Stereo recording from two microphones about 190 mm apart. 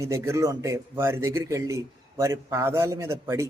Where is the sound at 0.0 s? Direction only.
15° right (ahead or behind).